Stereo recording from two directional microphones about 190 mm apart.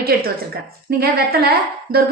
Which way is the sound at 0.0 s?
55° right (ahead or behind).